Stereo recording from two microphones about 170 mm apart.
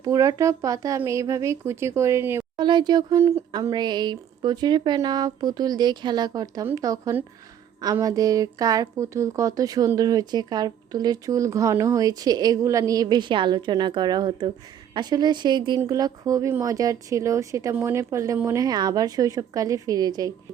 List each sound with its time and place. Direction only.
0.0 s speech: 20° right (ahead or behind)
2.6 s speech: 25° right (ahead or behind)